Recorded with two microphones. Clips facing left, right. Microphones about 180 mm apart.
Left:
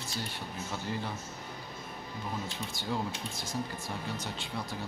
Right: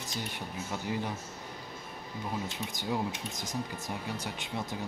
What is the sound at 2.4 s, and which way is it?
Speech, 20° right (ahead or behind).